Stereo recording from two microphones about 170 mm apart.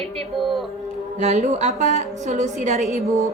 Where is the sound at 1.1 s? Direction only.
40° right (ahead or behind).